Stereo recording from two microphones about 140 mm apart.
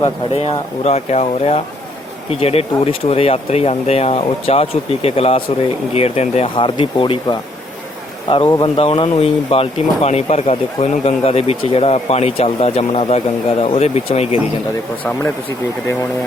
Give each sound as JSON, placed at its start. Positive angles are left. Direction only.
{"t": 0.0, "sound": "speech", "side_deg": 50}